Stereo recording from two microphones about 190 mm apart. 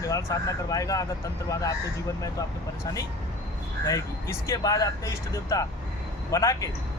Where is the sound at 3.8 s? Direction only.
15° left (ahead or behind).